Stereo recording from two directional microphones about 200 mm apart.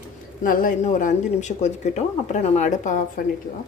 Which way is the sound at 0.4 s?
45° left (ahead or behind).